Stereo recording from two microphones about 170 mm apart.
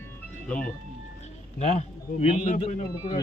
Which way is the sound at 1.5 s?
40° left (ahead or behind).